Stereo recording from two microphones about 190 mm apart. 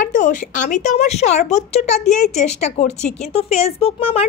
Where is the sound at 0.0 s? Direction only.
45° left (ahead or behind).